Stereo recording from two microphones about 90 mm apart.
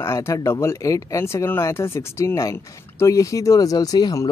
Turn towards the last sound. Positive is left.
turn(degrees=45)  # may be behind; listen again after turning